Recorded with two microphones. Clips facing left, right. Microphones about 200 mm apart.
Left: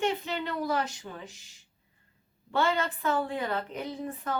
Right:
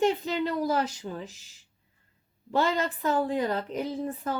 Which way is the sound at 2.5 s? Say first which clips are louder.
Right 2 dB; 35° right (ahead or behind).